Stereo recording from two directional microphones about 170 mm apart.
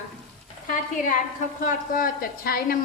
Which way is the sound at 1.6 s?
55° left (ahead or behind).